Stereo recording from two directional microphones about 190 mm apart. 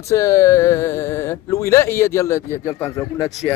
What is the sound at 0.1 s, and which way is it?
Speech, 15° left (ahead or behind).